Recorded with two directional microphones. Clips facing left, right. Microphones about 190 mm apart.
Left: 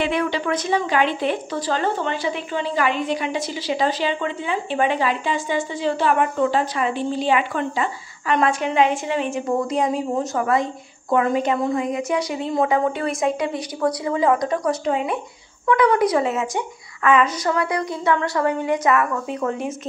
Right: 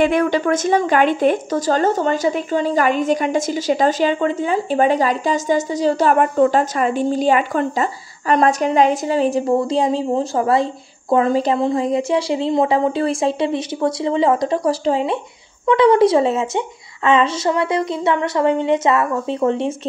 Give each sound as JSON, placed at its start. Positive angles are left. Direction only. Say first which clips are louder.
{"t": 0.0, "sound": "a woman's voice", "louder": "right 6 dB", "side_deg": -45}